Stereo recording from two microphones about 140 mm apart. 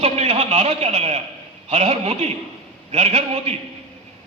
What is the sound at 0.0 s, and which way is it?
A man's voice, 50° right (ahead or behind).